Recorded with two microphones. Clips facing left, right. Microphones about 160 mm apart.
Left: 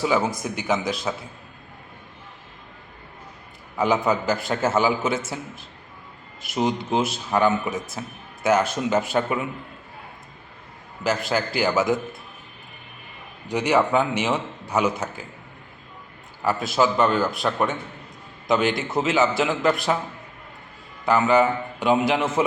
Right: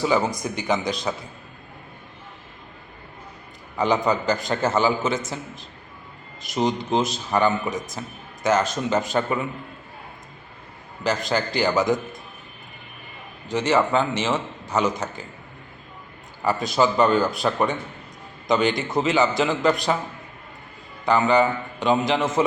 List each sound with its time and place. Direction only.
0.0 s speech: 5° left (ahead or behind)
3.8 s a man's voice: 5° left (ahead or behind)
11.0 s speech: 5° left (ahead or behind)
13.5 s a man's voice: 10° left (ahead or behind)
16.4 s speech: 5° left (ahead or behind)
21.0 s a man's voice: 5° left (ahead or behind)